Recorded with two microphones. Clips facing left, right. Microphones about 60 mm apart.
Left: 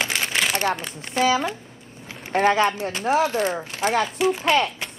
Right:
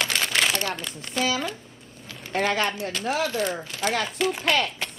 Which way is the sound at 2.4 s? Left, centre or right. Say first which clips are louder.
Left 6 dB; left.